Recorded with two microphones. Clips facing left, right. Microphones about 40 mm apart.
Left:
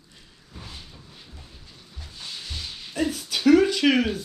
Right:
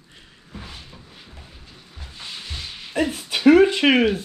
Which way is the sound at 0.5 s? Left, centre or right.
Right.